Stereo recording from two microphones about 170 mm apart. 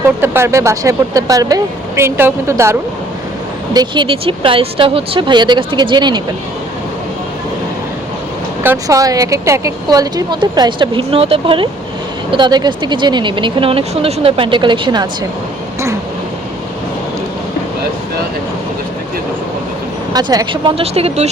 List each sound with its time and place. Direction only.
0.2 s speech: 15° right (ahead or behind)
3.8 s speech: 30° right (ahead or behind)
8.6 s speech: 15° right (ahead or behind)
20.1 s speech: 20° right (ahead or behind); by 21.2 s 35° right (ahead or behind)